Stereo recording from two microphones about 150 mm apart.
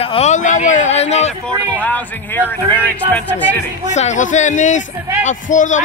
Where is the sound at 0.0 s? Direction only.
45° left (ahead or behind).